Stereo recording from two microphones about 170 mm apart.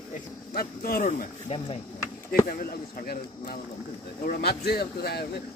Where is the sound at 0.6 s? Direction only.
60° left (ahead or behind).